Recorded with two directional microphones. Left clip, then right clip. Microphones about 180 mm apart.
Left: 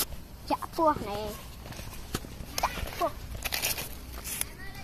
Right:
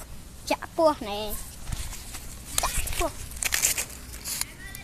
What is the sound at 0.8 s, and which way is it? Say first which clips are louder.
Speech: right 4 dB; 65° right (ahead or behind).